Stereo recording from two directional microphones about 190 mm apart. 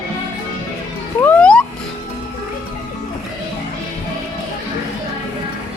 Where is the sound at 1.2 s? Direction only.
5° left (ahead or behind).